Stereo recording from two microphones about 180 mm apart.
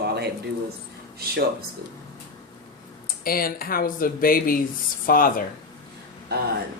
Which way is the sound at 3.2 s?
55° left (ahead or behind).